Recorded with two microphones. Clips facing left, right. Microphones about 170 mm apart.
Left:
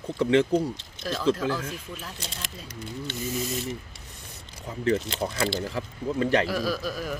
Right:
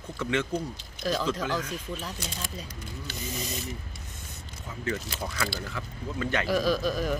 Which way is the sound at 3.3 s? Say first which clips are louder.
Left 5 dB; 5° left (ahead or behind).